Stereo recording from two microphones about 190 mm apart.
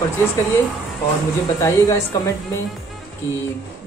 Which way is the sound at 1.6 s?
15° left (ahead or behind).